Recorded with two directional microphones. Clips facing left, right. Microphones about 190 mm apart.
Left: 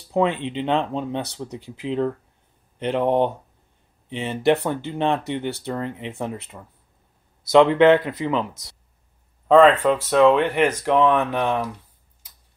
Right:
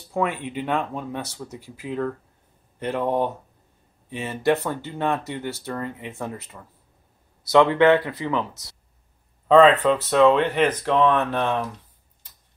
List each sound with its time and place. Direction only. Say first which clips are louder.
0.1 s speech: left 4 dB; 20° left (ahead or behind)